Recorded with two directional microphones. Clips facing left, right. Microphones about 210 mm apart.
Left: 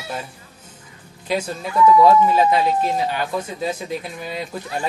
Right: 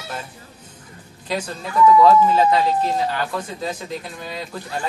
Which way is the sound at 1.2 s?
10° left (ahead or behind).